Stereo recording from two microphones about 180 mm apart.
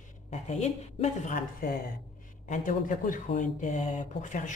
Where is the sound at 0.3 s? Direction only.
40° left (ahead or behind).